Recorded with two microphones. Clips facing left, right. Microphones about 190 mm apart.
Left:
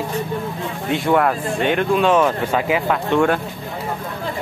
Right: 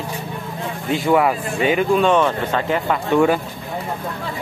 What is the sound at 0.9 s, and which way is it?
Speech, 5° right (ahead or behind).